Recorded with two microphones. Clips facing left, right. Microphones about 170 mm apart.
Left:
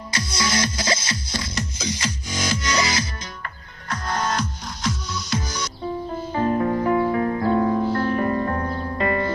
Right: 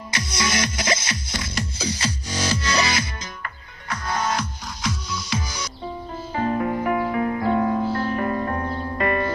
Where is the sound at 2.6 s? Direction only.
35° right (ahead or behind).